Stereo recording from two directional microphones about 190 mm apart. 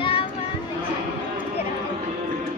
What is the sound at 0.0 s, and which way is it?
Children playing, 30° left (ahead or behind).